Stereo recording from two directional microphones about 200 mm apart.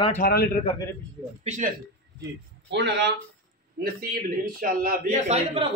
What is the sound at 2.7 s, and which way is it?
Speech, 60° right (ahead or behind).